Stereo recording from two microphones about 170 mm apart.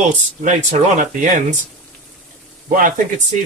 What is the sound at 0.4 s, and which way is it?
Speech, 45° right (ahead or behind).